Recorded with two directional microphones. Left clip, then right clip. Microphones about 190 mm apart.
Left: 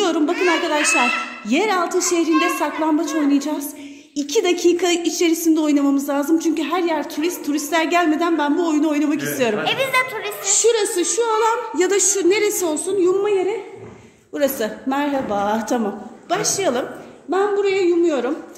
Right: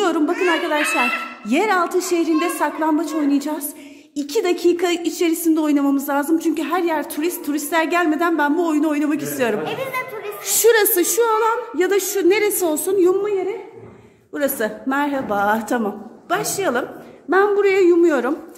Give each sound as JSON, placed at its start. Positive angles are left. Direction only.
{"t": 0.0, "sound": "a sound", "side_deg": 0}
{"t": 1.5, "sound": "a woman's voice", "side_deg": -5}
{"t": 9.7, "sound": "a woman's voice", "side_deg": 45}
{"t": 10.4, "sound": "singing", "side_deg": -20}
{"t": 11.3, "sound": "a woman's voice", "side_deg": 0}
{"t": 13.2, "sound": "a woman's voice", "side_deg": 20}
{"t": 14.3, "sound": "a woman's voice", "side_deg": 0}
{"t": 17.3, "sound": "singing", "side_deg": -30}